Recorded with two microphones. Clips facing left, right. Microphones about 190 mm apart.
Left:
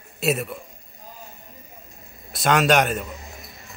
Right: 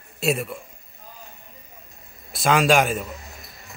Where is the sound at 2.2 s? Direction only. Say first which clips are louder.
Even; centre (ahead or behind).